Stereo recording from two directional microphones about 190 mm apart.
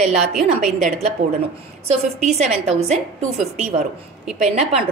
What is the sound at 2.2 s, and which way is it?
A woman's voice, 35° right (ahead or behind).